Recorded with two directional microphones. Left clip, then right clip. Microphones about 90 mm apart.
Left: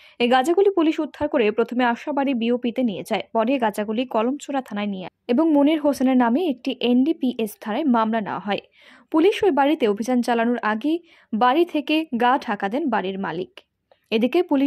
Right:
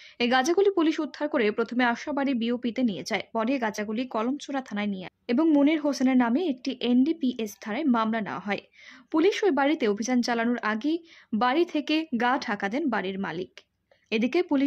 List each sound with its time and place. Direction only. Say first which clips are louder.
0.2 s speech: left 5 dB; 30° left (ahead or behind)